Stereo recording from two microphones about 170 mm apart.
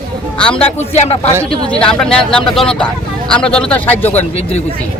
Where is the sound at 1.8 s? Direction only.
5° left (ahead or behind).